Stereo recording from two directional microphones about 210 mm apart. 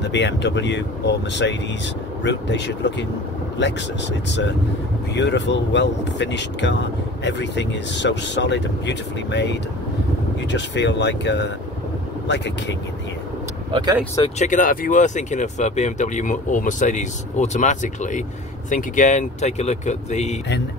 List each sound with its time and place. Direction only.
0.0 s speech: 55° left (ahead or behind)
5.1 s speech: 55° left (ahead or behind)
13.7 s speech: 20° right (ahead or behind)
14.4 s speech: 40° left (ahead or behind)